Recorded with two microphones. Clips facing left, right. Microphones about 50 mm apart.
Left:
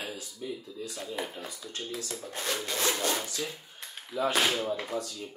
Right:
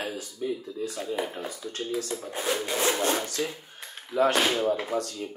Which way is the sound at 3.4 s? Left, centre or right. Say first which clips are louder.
Right 6 dB; right.